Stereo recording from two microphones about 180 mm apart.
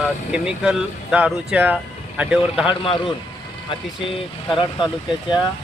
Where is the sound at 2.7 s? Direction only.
30° left (ahead or behind).